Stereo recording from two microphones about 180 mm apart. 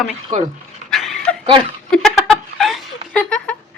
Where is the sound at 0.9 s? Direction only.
Centre (ahead or behind).